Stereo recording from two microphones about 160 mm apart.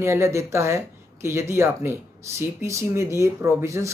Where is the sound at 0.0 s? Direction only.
15° right (ahead or behind).